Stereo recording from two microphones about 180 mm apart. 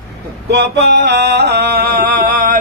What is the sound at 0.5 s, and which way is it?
Music, 70° right (ahead or behind).